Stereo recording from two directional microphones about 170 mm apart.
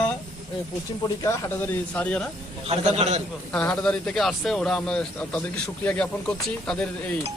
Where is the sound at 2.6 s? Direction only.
40° right (ahead or behind).